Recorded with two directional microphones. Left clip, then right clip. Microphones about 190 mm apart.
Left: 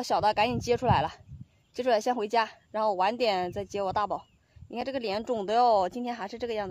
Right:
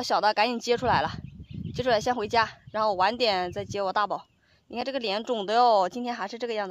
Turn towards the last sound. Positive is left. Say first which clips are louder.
# right 2 dB
turn(degrees=-5)  # may be behind; listen again after turning